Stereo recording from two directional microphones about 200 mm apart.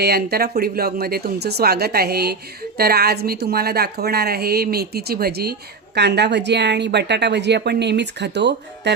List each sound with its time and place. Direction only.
0.0 s a woman's voice: 50° right (ahead or behind)